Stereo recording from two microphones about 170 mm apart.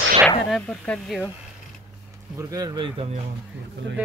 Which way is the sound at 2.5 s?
20° right (ahead or behind).